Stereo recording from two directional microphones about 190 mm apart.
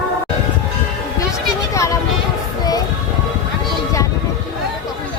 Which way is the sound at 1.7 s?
15° left (ahead or behind).